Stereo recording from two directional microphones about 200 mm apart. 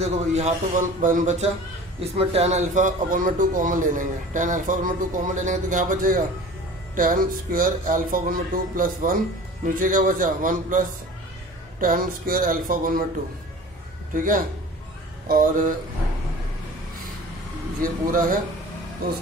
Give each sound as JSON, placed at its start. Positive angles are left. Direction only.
{"t": 0.0, "sound": "a man's voice", "side_deg": -35}
{"t": 14.1, "sound": "speech", "side_deg": -40}
{"t": 18.1, "sound": "speech", "side_deg": -45}